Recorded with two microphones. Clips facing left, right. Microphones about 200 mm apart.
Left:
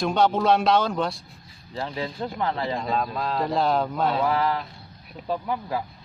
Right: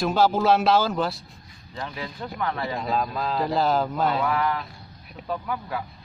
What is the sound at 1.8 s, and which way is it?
Speech, 30° left (ahead or behind).